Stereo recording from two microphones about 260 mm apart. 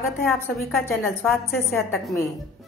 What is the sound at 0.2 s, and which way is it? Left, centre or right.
A woman's voice, centre.